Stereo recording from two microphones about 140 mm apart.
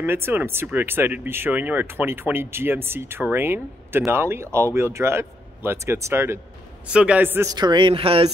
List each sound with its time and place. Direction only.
0.0 s speech: 15° right (ahead or behind)
6.9 s speech: 10° right (ahead or behind)
7.5 s speech: 35° right (ahead or behind)